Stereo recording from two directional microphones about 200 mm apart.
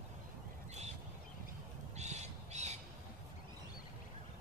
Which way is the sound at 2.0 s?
35° right (ahead or behind).